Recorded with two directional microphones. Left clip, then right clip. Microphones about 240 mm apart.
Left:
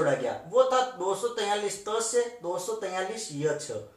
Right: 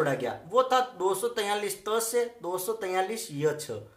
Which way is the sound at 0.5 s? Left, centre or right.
Right.